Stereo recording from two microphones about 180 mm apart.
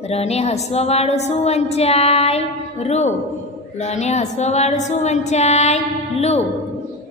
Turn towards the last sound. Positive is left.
turn(degrees=35)  # may be behind; listen again after turning